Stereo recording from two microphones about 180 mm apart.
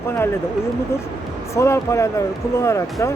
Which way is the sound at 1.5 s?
15° left (ahead or behind).